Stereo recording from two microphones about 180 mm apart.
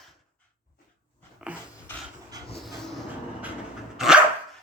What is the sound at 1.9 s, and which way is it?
Dog, 10° left (ahead or behind).